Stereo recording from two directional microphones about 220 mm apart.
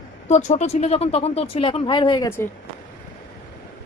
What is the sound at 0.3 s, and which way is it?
Speech, 30° left (ahead or behind).